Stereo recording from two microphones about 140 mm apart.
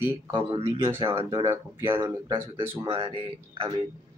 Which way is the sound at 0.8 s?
20° right (ahead or behind).